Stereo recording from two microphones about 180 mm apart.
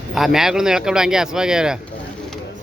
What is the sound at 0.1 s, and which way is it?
Speech, centre (ahead or behind).